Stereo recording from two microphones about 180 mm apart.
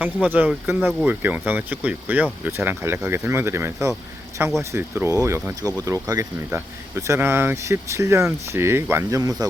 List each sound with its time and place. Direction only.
0.0 s speech: 10° right (ahead or behind)